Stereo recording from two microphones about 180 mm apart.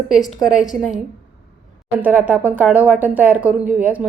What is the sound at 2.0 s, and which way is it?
A woman's voice, 10° right (ahead or behind).